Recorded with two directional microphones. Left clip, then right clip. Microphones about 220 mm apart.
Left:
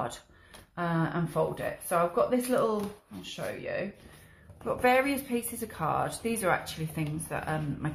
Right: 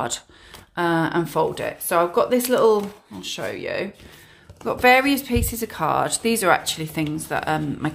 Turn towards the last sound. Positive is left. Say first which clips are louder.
# right 10 dB
turn(degrees=-45)  # may be behind; listen again after turning